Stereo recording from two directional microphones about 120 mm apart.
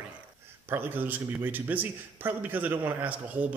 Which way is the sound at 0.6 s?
15° right (ahead or behind).